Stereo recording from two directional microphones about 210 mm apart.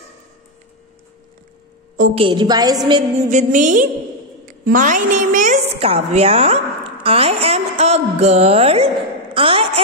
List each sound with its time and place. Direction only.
2.1 s a woman's voice: 25° right (ahead or behind)
3.2 s music: 35° right (ahead or behind)
4.5 s a woman's voice: 40° right (ahead or behind)